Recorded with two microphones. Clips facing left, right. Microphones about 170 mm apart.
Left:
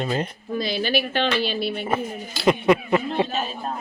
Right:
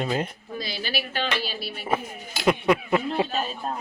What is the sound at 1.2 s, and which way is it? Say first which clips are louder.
Speech: left 7 dB; 5° right (ahead or behind).